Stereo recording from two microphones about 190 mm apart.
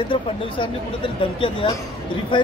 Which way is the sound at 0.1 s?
25° left (ahead or behind).